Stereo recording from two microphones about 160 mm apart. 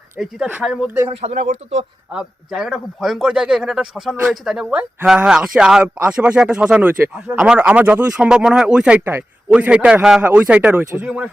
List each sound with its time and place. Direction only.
0.2 s a man's voice: 5° right (ahead or behind)
1.1 s speech: 45° right (ahead or behind)
2.1 s a man's voice: 5° right (ahead or behind)